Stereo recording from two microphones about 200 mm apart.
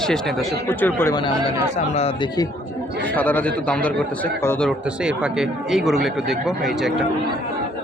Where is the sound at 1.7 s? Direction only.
30° left (ahead or behind).